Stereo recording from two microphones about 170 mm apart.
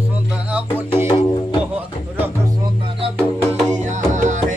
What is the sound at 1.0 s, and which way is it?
Music, 30° left (ahead or behind).